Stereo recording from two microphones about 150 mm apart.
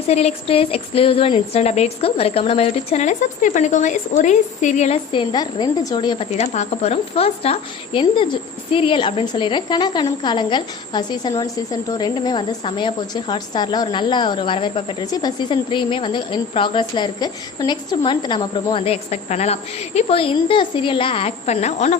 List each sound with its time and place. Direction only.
0.1 s a woman's voice: 45° left (ahead or behind)
5.1 s a woman's voice: 30° left (ahead or behind)
6.3 s speech: 45° left (ahead or behind)